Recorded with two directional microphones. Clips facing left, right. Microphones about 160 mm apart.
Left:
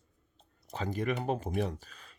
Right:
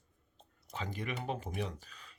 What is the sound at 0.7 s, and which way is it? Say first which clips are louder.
Speech: left 7 dB; 40° left (ahead or behind).